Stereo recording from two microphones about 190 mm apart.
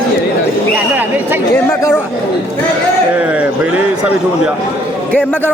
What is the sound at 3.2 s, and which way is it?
Speech, 5° right (ahead or behind).